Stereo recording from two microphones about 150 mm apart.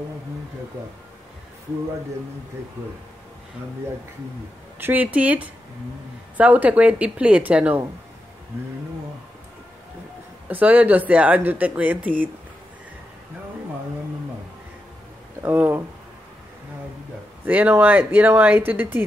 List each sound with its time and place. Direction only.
4.7 s speech: 15° right (ahead or behind)
10.5 s speech: 10° right (ahead or behind)
15.4 s speech: 15° right (ahead or behind)
17.5 s speech: 10° right (ahead or behind)